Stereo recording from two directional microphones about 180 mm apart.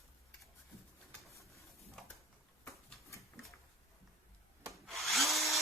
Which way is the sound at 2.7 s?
15° left (ahead or behind).